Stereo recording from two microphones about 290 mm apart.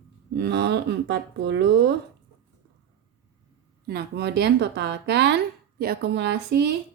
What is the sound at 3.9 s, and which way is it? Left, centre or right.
Speech, right.